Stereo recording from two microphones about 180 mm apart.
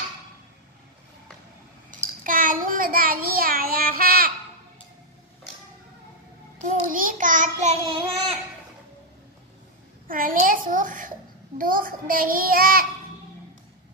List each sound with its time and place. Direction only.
2.2 s child singing: 50° right (ahead or behind)
6.6 s child singing: 50° right (ahead or behind)
10.0 s a child's voice: 50° right (ahead or behind)